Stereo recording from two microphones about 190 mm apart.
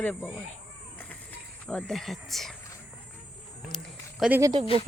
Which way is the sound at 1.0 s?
10° left (ahead or behind).